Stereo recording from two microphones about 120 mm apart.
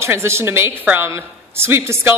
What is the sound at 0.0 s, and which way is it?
A woman's voice, 20° right (ahead or behind).